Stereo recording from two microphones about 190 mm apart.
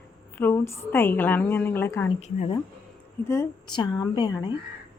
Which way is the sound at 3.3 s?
20° left (ahead or behind).